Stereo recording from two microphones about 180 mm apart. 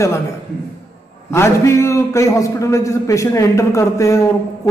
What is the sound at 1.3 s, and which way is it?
A man's voice, 15° left (ahead or behind).